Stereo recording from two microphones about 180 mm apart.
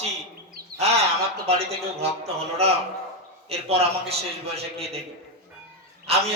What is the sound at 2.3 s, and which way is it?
A man's voice, 35° right (ahead or behind).